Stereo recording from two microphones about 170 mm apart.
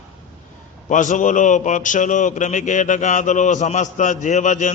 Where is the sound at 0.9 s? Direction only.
50° left (ahead or behind).